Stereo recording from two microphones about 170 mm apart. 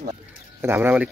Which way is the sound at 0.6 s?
10° right (ahead or behind).